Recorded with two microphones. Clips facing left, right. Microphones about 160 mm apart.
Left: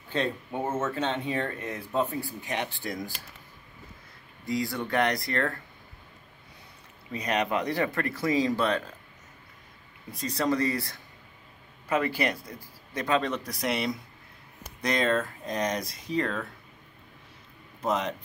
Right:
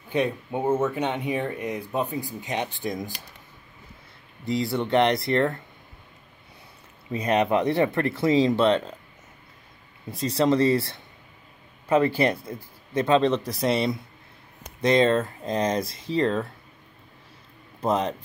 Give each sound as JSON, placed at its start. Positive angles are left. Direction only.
{"t": 0.1, "sound": "speech", "side_deg": -15}
{"t": 4.5, "sound": "speech", "side_deg": -25}
{"t": 7.1, "sound": "speech", "side_deg": -25}
{"t": 10.1, "sound": "speech", "side_deg": -25}
{"t": 17.8, "sound": "speech", "side_deg": -35}